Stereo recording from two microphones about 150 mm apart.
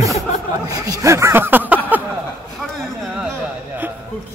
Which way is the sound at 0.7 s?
20° right (ahead or behind).